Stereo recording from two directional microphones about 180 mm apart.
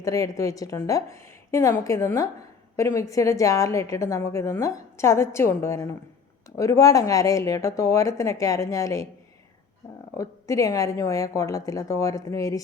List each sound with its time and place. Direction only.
0.0 s a woman's voice: 15° left (ahead or behind)
10.2 s a woman's voice: 20° left (ahead or behind)